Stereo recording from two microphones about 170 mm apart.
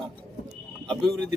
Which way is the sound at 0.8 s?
5° left (ahead or behind).